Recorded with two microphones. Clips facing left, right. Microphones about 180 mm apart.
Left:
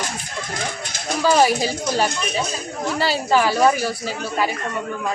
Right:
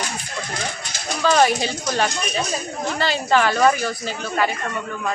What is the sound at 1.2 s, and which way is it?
Speech, 5° left (ahead or behind).